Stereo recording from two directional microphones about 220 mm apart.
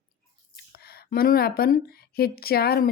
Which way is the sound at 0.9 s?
40° left (ahead or behind).